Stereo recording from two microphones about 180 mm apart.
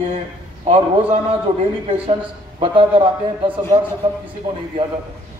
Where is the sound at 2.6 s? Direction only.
30° right (ahead or behind).